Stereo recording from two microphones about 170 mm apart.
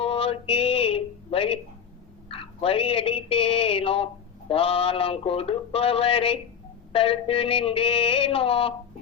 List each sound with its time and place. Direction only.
0.0 s speech: 35° left (ahead or behind)